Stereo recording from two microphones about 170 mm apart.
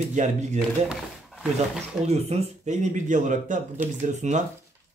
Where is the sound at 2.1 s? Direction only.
40° right (ahead or behind).